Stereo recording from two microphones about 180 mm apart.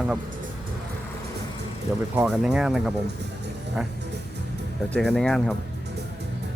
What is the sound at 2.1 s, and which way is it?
Speech, centre (ahead or behind).